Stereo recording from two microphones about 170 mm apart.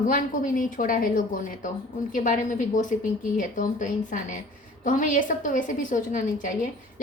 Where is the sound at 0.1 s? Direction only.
50° left (ahead or behind).